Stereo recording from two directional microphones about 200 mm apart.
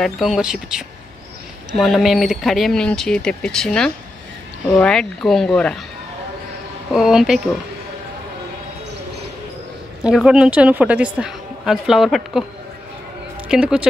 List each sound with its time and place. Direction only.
0.0 s speech: centre (ahead or behind)
6.9 s speech: centre (ahead or behind)
10.0 s speech: 5° right (ahead or behind)
13.5 s speech: 5° right (ahead or behind)